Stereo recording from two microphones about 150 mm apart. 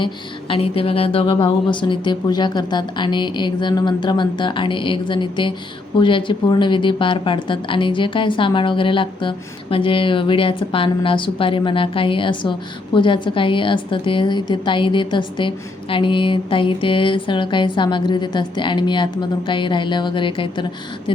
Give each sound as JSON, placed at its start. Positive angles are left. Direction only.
{"t": 0.0, "sound": "speech", "side_deg": 35}